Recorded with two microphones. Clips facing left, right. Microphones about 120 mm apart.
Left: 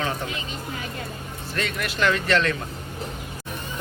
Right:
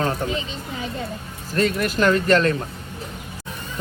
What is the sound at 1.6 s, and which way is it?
Speech, 40° right (ahead or behind).